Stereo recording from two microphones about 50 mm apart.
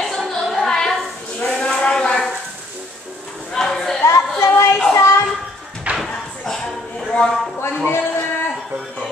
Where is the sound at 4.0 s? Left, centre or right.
Left.